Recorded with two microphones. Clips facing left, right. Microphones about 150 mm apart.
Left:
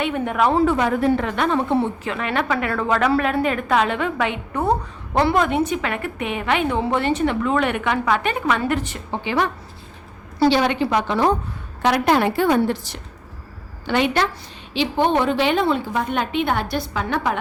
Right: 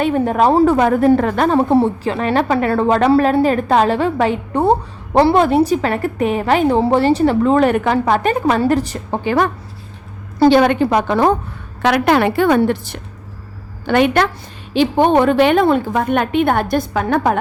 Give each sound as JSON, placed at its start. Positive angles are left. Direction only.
{"t": 0.0, "sound": "a woman's voice", "side_deg": -35}
{"t": 11.8, "sound": "a woman's voice", "side_deg": -75}